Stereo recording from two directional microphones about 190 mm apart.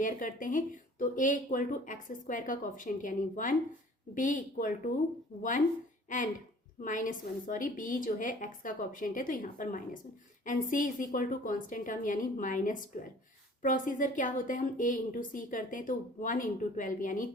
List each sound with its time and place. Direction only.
0.0 s a woman's voice: 45° left (ahead or behind)
6.8 s a woman's voice: 45° left (ahead or behind)